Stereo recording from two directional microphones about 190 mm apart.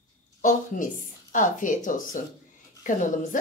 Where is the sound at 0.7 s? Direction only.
45° left (ahead or behind).